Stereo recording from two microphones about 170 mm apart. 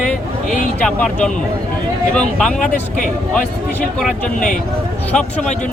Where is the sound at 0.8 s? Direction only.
5° left (ahead or behind).